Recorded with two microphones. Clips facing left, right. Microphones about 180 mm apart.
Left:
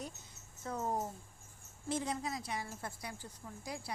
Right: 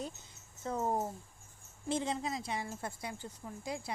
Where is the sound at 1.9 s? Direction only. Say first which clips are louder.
Right 3 dB; 25° right (ahead or behind).